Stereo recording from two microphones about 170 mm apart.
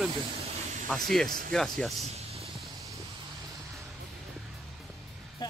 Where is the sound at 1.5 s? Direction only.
5° left (ahead or behind).